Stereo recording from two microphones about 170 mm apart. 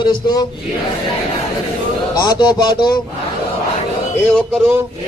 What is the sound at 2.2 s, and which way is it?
Speech, 25° left (ahead or behind).